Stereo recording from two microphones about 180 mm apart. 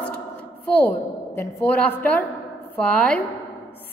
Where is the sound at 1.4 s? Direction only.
10° left (ahead or behind).